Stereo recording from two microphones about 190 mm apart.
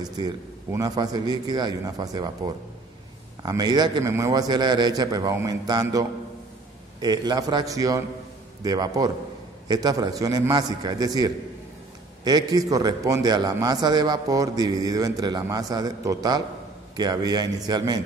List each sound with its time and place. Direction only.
0.0 s a man's voice: 20° right (ahead or behind)